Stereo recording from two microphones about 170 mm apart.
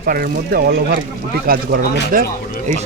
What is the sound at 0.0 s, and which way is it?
Speech, 60° right (ahead or behind).